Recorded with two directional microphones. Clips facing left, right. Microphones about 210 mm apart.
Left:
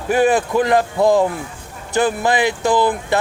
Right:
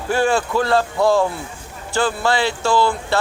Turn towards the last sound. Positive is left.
turn(degrees=15)  # may be behind; listen again after turning